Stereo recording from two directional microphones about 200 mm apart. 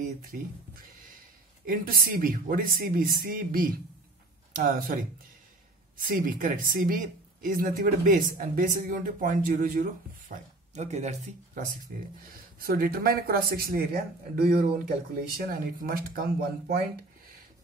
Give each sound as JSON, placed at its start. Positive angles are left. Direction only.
{"t": 1.7, "sound": "speech", "side_deg": -45}